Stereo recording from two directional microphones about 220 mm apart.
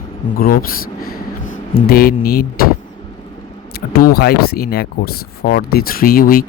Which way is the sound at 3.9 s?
45° left (ahead or behind).